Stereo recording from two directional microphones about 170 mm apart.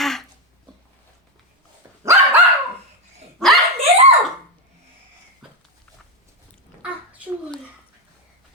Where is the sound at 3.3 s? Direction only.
Centre (ahead or behind).